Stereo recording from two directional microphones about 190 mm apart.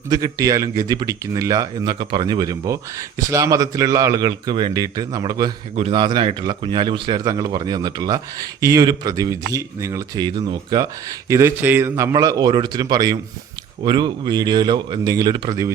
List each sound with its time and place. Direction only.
0.1 s a man's voice: 20° right (ahead or behind)